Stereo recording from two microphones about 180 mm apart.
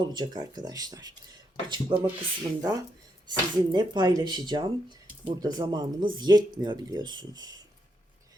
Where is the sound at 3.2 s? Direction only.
25° right (ahead or behind).